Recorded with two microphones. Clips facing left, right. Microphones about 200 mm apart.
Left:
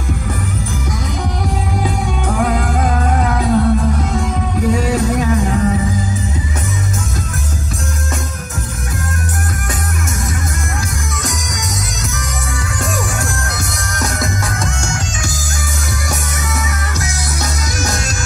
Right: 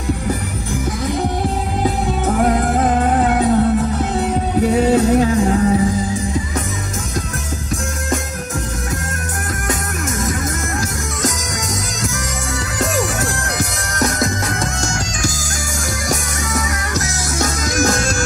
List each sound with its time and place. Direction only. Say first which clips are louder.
1.0 s music: right 5 dB; 30° right (ahead or behind)
13.9 s music: right 3 dB; 35° right (ahead or behind)
16.5 s music: right 4 dB; 45° right (ahead or behind)